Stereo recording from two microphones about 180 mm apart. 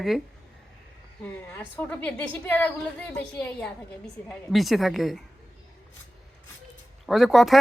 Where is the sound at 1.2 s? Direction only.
10° left (ahead or behind).